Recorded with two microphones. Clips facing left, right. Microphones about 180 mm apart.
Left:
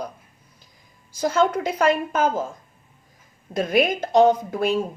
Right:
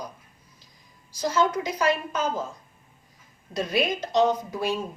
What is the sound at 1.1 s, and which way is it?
Speech, 55° left (ahead or behind).